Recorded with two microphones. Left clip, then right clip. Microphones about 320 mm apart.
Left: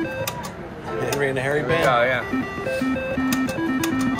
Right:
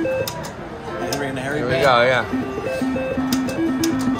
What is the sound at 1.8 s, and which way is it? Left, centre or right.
Speech, centre.